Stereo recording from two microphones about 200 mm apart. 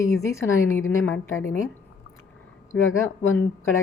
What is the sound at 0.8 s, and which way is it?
Speech, 90° left.